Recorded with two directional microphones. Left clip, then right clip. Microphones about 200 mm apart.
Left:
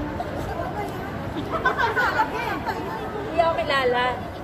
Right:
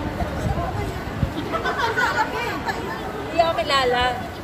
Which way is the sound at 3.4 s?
15° right (ahead or behind).